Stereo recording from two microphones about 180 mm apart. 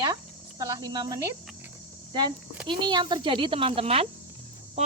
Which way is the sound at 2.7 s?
25° right (ahead or behind).